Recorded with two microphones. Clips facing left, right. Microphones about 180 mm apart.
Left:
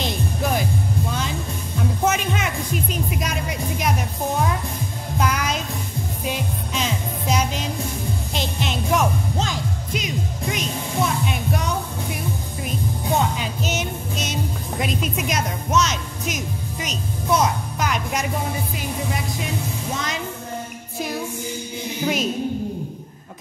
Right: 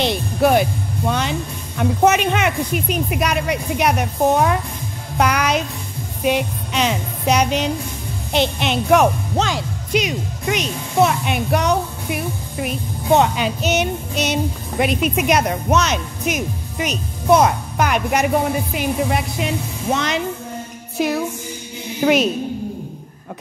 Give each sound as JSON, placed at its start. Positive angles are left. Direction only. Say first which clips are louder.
{"t": 0.0, "sound": "music", "louder": "right 7 dB", "side_deg": -70}
{"t": 1.8, "sound": "speech", "louder": "right 6 dB", "side_deg": -70}
{"t": 5.1, "sound": "music", "louder": "right 6 dB", "side_deg": -70}
{"t": 8.3, "sound": "speech", "louder": "right 10 dB", "side_deg": -70}
{"t": 12.6, "sound": "music", "louder": "right 5 dB", "side_deg": -70}
{"t": 18.8, "sound": "speech", "louder": "right 7 dB", "side_deg": -70}